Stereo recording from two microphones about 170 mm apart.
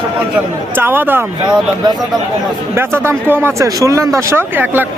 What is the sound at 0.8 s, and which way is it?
Speech, 10° right (ahead or behind).